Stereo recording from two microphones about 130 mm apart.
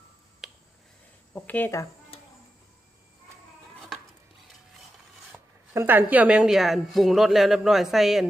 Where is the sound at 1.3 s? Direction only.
15° left (ahead or behind).